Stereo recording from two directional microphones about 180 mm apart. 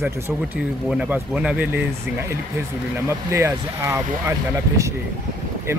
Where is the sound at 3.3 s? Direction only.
15° right (ahead or behind).